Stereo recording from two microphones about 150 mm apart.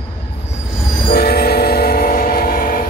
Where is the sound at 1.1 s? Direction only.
90° left; by 2.8 s 75° left (ahead or behind).